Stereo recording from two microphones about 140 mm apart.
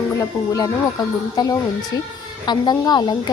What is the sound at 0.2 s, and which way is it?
A woman's voice, 25° left (ahead or behind).